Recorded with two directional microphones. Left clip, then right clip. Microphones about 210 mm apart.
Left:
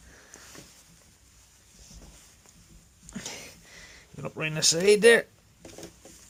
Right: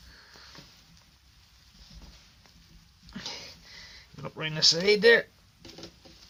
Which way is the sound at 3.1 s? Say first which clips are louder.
Right 1 dB; 20° left (ahead or behind).